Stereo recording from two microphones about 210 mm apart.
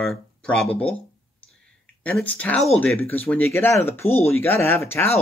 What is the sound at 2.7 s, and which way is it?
Speech, 5° left (ahead or behind).